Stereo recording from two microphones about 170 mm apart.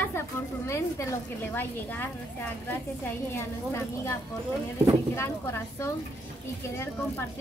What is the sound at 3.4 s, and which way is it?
A woman's voice, 15° left (ahead or behind).